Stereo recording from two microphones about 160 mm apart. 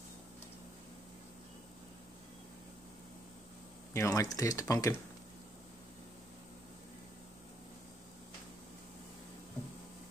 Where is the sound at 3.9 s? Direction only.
20° left (ahead or behind).